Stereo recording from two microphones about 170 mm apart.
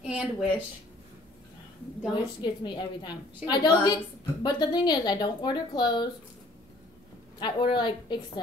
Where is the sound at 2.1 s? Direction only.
25° left (ahead or behind).